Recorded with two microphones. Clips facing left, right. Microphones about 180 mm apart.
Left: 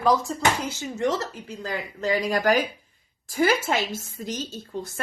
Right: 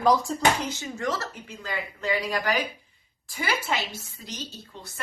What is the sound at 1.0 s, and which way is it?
Speech, 20° left (ahead or behind).